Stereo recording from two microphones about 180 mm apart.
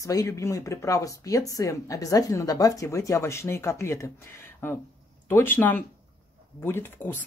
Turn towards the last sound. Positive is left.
turn(degrees=10)  # may be behind; listen again after turning